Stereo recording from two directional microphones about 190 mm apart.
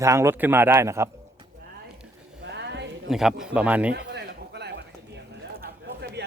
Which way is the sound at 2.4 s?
65° right (ahead or behind).